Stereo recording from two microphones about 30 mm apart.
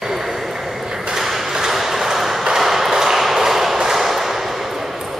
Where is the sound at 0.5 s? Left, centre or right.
Centre.